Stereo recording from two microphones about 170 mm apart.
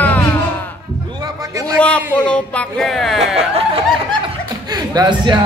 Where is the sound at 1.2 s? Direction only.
20° right (ahead or behind).